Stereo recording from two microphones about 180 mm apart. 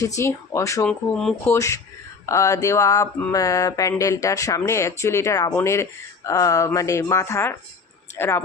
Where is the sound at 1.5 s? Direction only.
15° left (ahead or behind).